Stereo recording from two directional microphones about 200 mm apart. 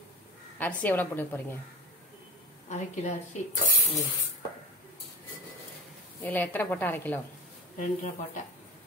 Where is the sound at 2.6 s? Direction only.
35° left (ahead or behind).